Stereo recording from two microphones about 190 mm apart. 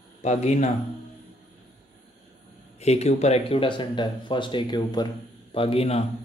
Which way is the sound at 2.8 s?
35° left (ahead or behind).